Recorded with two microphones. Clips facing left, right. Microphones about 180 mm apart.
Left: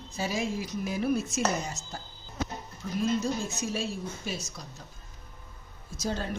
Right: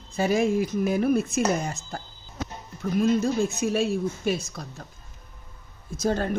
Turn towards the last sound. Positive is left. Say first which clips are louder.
# right 7 dB
turn(degrees=-55)  # may be behind; listen again after turning